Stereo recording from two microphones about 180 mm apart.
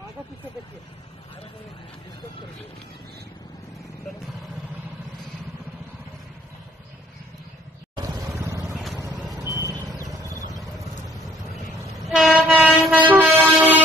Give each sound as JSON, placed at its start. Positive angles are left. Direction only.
{"t": 7.9, "sound": "vehicle", "side_deg": -15}
{"t": 12.1, "sound": "train", "side_deg": -5}